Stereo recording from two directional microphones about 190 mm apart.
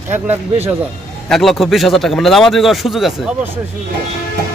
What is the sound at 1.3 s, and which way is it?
A man's voice, centre (ahead or behind).